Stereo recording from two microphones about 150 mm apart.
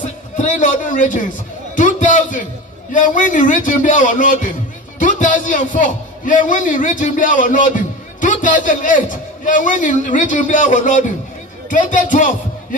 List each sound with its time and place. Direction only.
0.0 s a man's voice: 55° left (ahead or behind)